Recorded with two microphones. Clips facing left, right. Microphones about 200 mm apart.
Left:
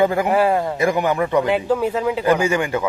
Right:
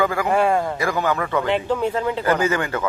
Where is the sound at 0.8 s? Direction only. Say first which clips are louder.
Left 4 dB; 20° left (ahead or behind).